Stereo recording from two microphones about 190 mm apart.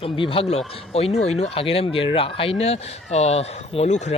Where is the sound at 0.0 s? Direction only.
30° left (ahead or behind).